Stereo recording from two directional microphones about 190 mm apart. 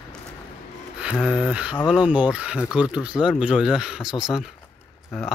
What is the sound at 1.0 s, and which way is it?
Speech, 5° right (ahead or behind).